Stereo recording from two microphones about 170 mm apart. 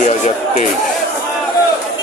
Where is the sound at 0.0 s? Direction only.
45° left (ahead or behind).